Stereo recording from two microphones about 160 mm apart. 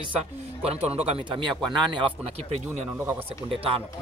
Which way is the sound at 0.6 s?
40° right (ahead or behind).